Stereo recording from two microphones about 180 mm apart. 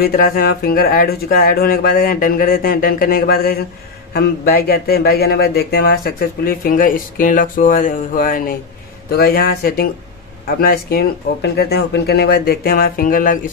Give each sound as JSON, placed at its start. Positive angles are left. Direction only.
{"t": 0.0, "sound": "speech", "side_deg": 55}